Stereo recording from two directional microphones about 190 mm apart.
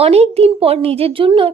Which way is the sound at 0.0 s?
35° right (ahead or behind).